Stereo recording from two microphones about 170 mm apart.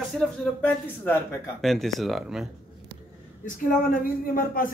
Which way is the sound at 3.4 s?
55° left (ahead or behind).